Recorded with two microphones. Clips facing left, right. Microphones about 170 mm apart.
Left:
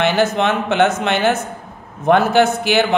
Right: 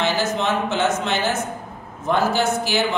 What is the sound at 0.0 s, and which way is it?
Speech, 65° left (ahead or behind).